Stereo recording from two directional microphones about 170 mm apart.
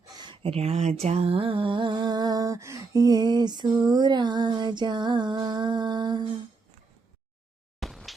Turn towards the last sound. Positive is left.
turn(degrees=0)  # may be behind; listen again after turning